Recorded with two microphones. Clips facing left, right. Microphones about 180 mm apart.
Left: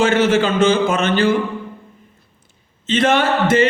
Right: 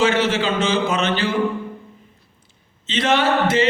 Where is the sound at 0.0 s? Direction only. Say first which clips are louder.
Left 4 dB; 50° left (ahead or behind).